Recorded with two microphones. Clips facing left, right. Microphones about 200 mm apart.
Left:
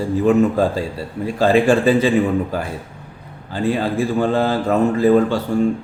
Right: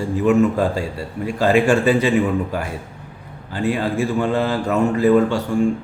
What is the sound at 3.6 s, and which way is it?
A man's voice, 35° left (ahead or behind).